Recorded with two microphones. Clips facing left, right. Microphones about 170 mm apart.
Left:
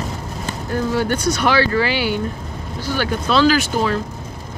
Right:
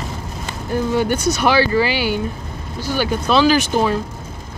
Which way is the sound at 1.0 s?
10° right (ahead or behind).